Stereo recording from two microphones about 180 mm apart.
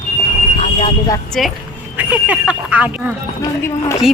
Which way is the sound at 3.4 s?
15° left (ahead or behind).